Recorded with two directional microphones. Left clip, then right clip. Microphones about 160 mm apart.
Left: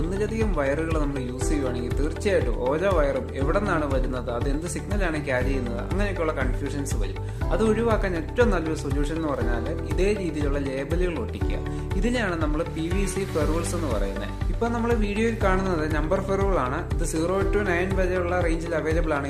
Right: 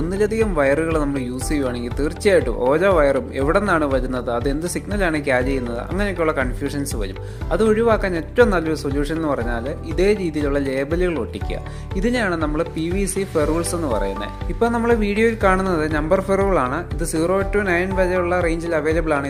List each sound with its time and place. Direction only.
0.1 s speech: 45° right (ahead or behind)
7.5 s music: 40° right (ahead or behind)
10.0 s speech: 40° right (ahead or behind)
11.9 s music: 40° right (ahead or behind)